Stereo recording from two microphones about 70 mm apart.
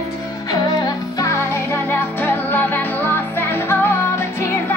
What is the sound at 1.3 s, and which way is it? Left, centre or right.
Music, left.